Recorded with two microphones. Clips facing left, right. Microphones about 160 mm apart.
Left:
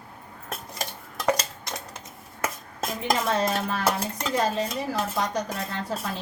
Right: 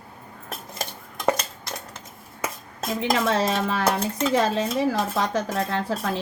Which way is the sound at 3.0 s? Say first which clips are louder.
Right 2 dB; 75° right (ahead or behind).